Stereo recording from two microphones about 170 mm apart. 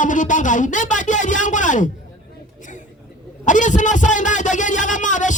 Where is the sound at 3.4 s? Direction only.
50° left (ahead or behind).